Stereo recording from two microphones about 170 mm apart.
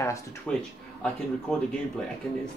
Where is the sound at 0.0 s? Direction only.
20° left (ahead or behind).